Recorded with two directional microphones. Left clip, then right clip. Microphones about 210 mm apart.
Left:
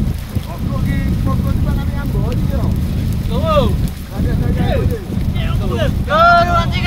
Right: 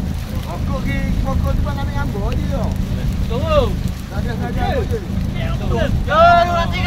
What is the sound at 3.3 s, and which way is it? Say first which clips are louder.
Speech: left 2 dB; 20° left (ahead or behind).